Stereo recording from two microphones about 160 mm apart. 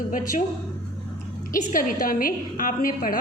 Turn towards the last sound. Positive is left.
turn(degrees=60)  # may be behind; listen again after turning